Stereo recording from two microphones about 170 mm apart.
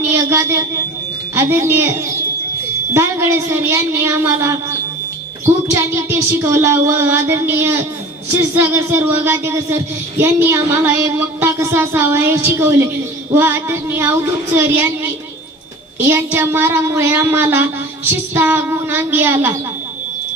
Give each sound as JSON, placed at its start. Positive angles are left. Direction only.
{"t": 0.0, "sound": "a woman's voice", "side_deg": -15}
{"t": 5.7, "sound": "speech", "side_deg": -15}